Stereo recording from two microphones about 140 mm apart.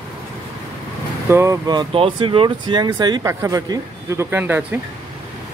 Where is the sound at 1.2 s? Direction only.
20° right (ahead or behind).